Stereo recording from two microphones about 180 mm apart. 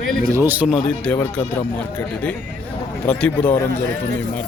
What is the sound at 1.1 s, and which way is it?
Speech, 10° left (ahead or behind).